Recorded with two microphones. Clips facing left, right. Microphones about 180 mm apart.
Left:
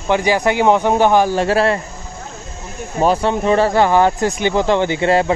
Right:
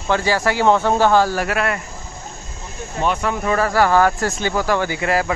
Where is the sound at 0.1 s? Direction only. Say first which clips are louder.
Left 3 dB; 15° left (ahead or behind).